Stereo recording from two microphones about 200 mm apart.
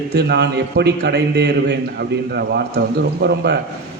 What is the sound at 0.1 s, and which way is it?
A man's voice, 55° right (ahead or behind).